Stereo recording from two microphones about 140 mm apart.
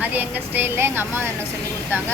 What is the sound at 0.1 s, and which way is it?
Speech, 15° right (ahead or behind).